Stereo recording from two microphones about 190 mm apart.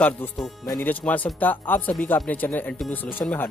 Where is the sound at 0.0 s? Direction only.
10° left (ahead or behind).